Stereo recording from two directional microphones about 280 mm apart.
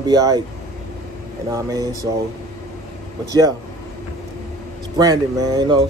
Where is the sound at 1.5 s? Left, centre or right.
Centre.